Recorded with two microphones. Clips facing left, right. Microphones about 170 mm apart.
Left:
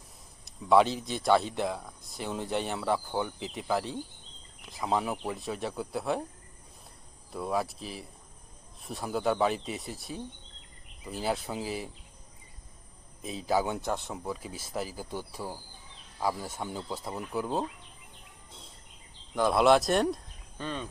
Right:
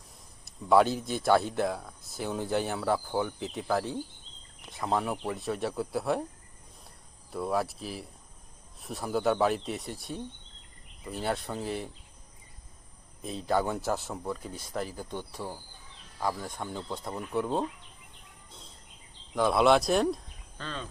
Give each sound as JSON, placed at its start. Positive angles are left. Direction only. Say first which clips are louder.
{"t": 0.4, "sound": "speech", "louder": "even", "side_deg": 0}
{"t": 7.3, "sound": "speech", "louder": "right 1 dB", "side_deg": 0}
{"t": 13.2, "sound": "speech", "louder": "even", "side_deg": 0}
{"t": 19.3, "sound": "speech", "louder": "even", "side_deg": 0}
{"t": 20.6, "sound": "speech", "louder": "left 3 dB", "side_deg": 15}